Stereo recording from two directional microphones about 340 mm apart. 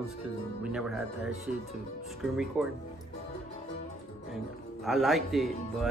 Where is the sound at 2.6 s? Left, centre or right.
Centre.